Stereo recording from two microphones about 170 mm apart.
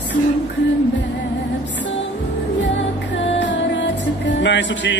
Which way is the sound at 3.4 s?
90° left.